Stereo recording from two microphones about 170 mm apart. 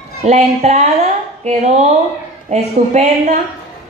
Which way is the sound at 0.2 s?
40° right (ahead or behind).